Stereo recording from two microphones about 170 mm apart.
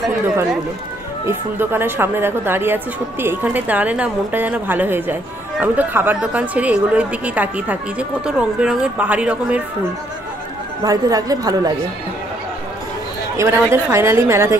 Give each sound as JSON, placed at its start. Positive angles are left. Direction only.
{"t": 1.2, "sound": "speech", "side_deg": -15}
{"t": 10.8, "sound": "a woman's voice", "side_deg": -20}
{"t": 13.4, "sound": "speech", "side_deg": -15}